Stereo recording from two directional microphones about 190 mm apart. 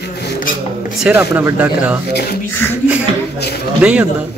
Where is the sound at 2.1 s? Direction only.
55° left (ahead or behind).